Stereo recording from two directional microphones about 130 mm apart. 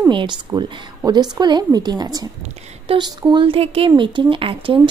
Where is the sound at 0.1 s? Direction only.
40° right (ahead or behind).